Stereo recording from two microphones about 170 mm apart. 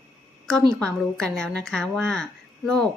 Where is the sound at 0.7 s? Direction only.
5° left (ahead or behind).